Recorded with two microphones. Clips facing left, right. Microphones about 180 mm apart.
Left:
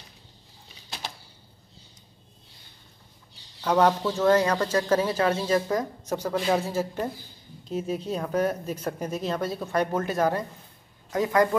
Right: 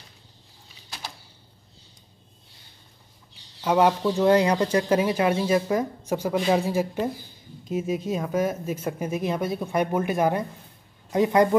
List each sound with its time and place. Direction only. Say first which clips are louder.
3.6 s speech: right 1 dB; 10° right (ahead or behind)